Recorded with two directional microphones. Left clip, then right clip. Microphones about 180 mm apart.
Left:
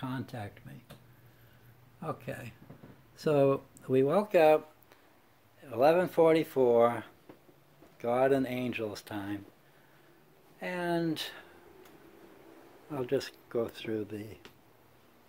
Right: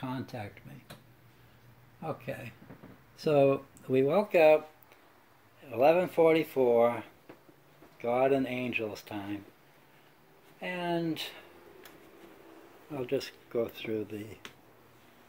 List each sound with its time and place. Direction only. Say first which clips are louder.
0.0 s a sound: right 1 dB; 15° left (ahead or behind)
2.0 s speech: right 1 dB; 20° left (ahead or behind)
5.6 s speech: right 1 dB; 20° left (ahead or behind)
10.6 s speech: even; 20° left (ahead or behind)
12.9 s speech: left 1 dB; 20° left (ahead or behind)